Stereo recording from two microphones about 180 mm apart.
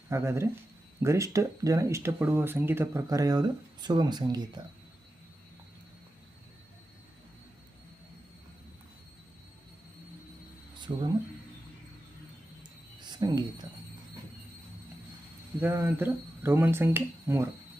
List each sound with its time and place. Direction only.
0.1 s speech: 15° right (ahead or behind)
10.8 s a sound: 25° right (ahead or behind)
13.0 s speech: 25° right (ahead or behind)
15.6 s speech: 10° right (ahead or behind)